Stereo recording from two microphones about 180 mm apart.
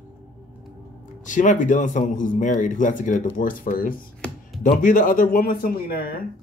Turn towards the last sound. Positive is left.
turn(degrees=55)  # may be behind; listen again after turning